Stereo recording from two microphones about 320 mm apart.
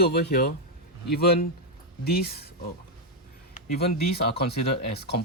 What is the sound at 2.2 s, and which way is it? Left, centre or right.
Speech, left.